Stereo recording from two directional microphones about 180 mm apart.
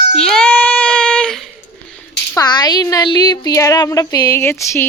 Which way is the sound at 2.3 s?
25° left (ahead or behind).